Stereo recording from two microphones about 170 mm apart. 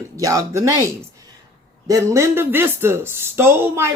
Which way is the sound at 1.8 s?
20° right (ahead or behind).